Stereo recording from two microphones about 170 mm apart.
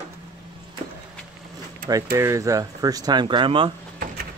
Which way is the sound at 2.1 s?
15° right (ahead or behind).